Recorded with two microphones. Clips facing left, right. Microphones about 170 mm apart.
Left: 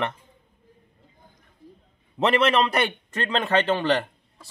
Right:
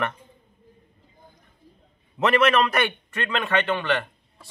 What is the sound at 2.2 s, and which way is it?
A man's voice, 30° left (ahead or behind).